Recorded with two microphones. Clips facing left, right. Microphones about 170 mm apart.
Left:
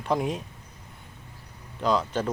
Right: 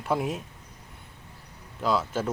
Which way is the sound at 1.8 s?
5° right (ahead or behind).